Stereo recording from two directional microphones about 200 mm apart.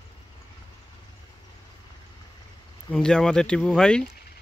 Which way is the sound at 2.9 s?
5° left (ahead or behind).